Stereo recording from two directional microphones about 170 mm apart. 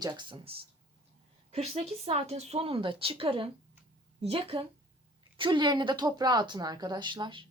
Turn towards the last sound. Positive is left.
turn(degrees=-30)  # may be behind; listen again after turning